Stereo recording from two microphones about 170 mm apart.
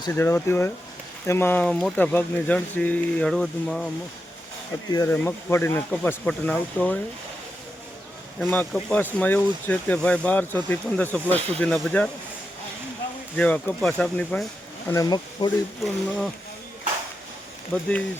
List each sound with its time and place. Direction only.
0.0 s speech: 15° left (ahead or behind)
4.9 s speech: 20° left (ahead or behind)
5.1 s speech: 10° left (ahead or behind)
8.4 s speech: 10° left (ahead or behind)
13.3 s speech: 10° left (ahead or behind)
14.8 s speech: 20° left (ahead or behind)
15.8 s speech: centre (ahead or behind)